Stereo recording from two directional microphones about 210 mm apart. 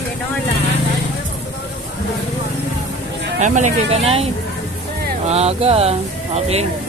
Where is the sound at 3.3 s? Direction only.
35° right (ahead or behind).